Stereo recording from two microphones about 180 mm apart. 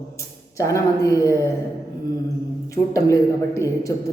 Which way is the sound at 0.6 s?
20° left (ahead or behind).